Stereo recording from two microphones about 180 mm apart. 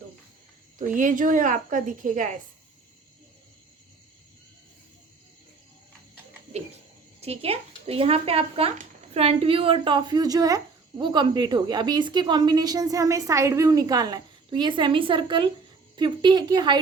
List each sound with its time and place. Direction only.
0.8 s a woman's voice: 45° right (ahead or behind)
7.2 s a woman's voice: 35° right (ahead or behind)